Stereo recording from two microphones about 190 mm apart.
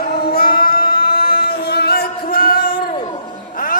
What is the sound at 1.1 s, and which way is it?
Music, 50° left (ahead or behind).